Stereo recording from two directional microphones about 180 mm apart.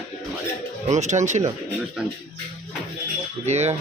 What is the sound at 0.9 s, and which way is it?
Speech, 40° right (ahead or behind).